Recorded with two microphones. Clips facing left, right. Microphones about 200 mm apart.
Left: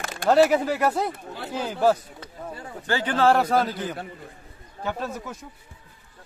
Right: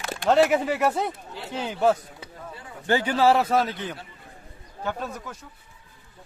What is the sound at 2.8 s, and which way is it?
Speech, 15° right (ahead or behind).